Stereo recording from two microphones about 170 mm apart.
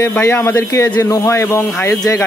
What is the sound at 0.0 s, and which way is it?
A man's voice, 15° left (ahead or behind).